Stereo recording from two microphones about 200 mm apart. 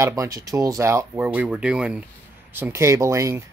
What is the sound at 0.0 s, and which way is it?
Speech, 15° right (ahead or behind).